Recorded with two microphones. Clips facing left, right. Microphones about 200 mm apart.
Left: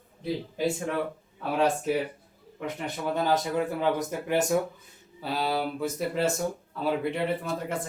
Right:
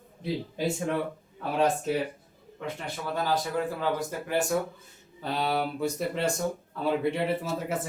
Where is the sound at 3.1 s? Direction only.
20° left (ahead or behind).